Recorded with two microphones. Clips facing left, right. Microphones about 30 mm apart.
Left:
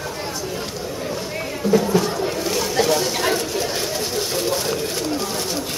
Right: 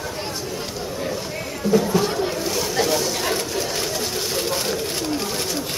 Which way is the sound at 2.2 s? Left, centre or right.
Centre.